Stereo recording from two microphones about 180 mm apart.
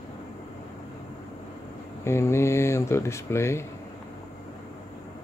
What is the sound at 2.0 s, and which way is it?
Speech, 15° left (ahead or behind).